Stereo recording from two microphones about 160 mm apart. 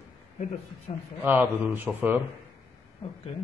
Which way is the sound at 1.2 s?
10° right (ahead or behind).